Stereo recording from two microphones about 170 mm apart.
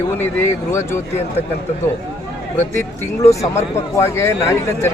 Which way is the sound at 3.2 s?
15° left (ahead or behind).